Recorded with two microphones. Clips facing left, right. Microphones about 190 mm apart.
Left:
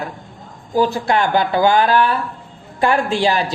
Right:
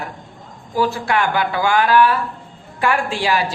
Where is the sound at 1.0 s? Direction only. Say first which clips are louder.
Left 2 dB; 35° left (ahead or behind).